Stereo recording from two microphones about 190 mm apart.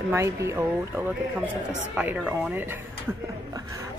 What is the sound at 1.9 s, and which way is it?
Speech, 5° right (ahead or behind).